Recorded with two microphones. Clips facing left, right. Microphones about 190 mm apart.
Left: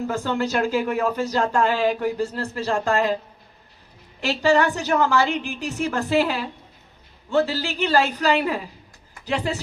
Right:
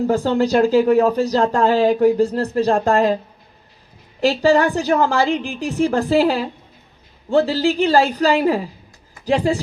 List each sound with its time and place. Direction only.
0.1 s speech: 35° right (ahead or behind)
4.2 s speech: 35° right (ahead or behind)